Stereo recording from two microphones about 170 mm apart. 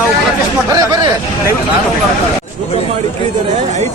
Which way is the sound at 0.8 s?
20° right (ahead or behind).